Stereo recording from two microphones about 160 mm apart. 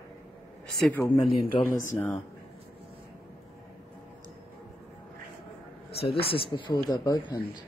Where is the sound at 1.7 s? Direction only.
55° left (ahead or behind).